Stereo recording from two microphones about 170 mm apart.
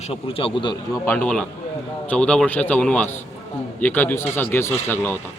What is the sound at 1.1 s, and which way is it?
Speech, 5° left (ahead or behind).